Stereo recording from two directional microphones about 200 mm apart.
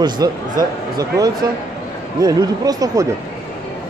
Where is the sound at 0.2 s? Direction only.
15° right (ahead or behind).